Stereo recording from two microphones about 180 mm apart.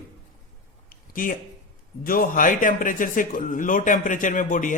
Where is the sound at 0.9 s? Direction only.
50° left (ahead or behind).